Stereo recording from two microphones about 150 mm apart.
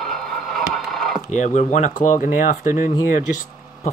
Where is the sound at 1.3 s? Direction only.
55° left (ahead or behind).